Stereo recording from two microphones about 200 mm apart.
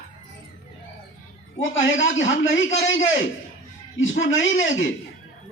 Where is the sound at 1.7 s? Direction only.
70° left (ahead or behind).